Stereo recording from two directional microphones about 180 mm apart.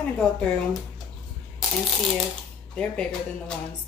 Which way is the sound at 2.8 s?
5° left (ahead or behind).